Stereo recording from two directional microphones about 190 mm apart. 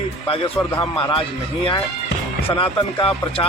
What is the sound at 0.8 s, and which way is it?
Speech, 30° left (ahead or behind).